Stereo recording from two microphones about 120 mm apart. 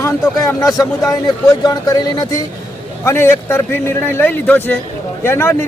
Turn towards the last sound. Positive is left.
turn(degrees=20)  # may be behind; listen again after turning